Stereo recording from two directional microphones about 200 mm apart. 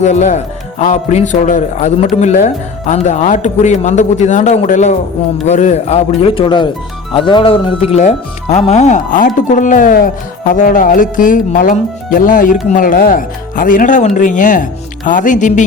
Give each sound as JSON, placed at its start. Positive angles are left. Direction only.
{"t": 0.0, "sound": "speech", "side_deg": 35}